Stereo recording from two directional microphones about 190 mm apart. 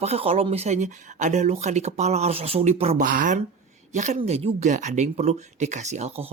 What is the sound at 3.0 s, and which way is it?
A woman's voice, 45° right (ahead or behind).